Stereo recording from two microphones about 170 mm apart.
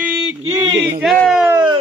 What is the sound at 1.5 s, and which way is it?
Speech, 25° right (ahead or behind).